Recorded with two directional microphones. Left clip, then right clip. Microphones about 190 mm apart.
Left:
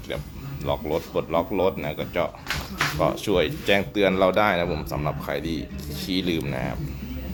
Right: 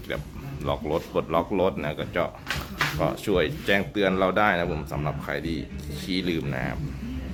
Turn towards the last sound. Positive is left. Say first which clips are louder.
# left 2 dB
turn(degrees=0)  # may be behind; listen again after turning